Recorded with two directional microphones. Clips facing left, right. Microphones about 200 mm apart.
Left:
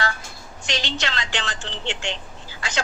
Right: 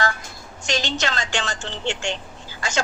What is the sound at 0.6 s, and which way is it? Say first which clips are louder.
Speech: right 3 dB; 45° right (ahead or behind).